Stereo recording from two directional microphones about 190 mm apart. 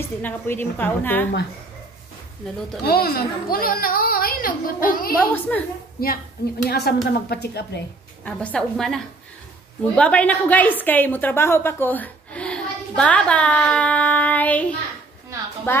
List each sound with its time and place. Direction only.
0.0 s a woman's voice: 10° left (ahead or behind)
2.8 s a woman's voice: 50° left (ahead or behind)
5.1 s a woman's voice: 10° left (ahead or behind)
6.7 s a woman's voice: 55° left (ahead or behind)
8.2 s a woman's voice: 5° left (ahead or behind)